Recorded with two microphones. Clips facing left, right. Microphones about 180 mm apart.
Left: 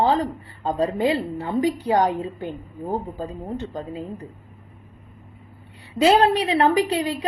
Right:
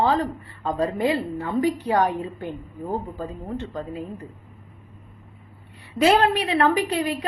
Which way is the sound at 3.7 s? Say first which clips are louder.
Even; 35° left (ahead or behind).